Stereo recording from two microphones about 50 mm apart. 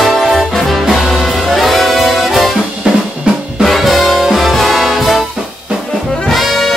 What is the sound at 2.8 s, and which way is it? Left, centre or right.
Drum, centre.